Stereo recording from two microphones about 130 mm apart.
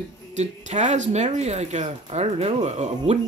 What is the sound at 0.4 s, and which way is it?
Speech, 65° right (ahead or behind).